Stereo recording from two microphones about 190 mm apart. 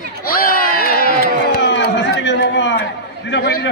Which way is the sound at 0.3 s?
50° left (ahead or behind).